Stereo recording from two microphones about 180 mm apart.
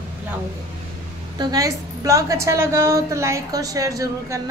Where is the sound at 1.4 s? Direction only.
20° right (ahead or behind).